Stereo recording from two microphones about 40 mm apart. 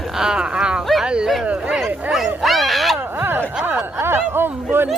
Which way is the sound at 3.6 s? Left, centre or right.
Right.